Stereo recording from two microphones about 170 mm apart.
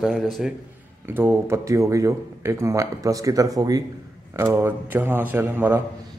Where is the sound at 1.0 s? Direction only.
10° right (ahead or behind).